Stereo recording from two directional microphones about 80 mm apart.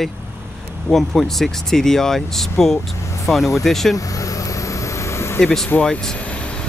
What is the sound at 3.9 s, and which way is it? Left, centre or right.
Vehicle, left.